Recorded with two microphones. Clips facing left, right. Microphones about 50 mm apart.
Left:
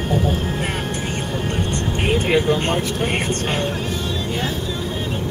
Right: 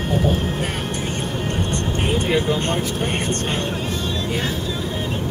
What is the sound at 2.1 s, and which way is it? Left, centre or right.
Speech, left.